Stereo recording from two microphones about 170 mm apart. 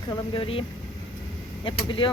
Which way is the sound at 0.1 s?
30° left (ahead or behind).